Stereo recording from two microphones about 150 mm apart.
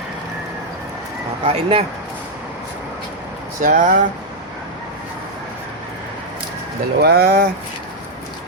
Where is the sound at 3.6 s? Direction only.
60° right (ahead or behind).